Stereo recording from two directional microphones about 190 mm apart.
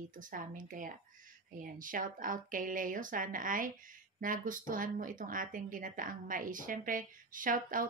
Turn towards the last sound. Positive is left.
turn(degrees=-45)  # may be behind; listen again after turning